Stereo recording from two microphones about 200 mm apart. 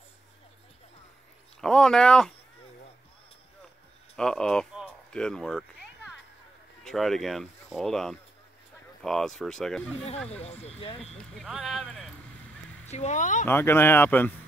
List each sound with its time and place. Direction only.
1.6 s speech: 5° left (ahead or behind)
4.2 s speech: 5° left (ahead or behind)
10.4 s speech: 30° left (ahead or behind)
11.0 s speech: 5° left (ahead or behind)
12.9 s speech: 35° left (ahead or behind)
13.5 s speech: 10° left (ahead or behind)